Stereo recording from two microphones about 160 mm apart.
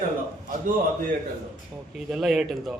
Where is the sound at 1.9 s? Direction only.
Centre (ahead or behind).